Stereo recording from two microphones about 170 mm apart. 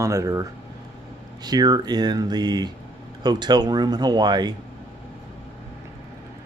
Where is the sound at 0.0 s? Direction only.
20° right (ahead or behind).